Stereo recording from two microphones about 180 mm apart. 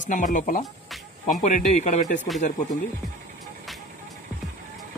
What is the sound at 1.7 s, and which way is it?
Speech, 40° left (ahead or behind).